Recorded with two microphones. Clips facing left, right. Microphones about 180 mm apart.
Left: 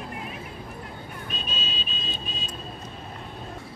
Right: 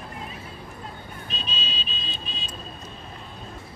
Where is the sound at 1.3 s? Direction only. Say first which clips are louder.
Even; 50° left (ahead or behind).